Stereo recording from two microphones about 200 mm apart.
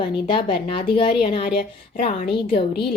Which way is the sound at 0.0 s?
25° left (ahead or behind).